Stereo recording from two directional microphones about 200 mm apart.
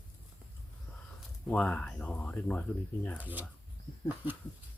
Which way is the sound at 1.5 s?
5° left (ahead or behind).